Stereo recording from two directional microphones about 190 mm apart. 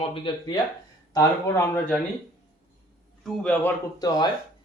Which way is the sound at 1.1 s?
15° left (ahead or behind).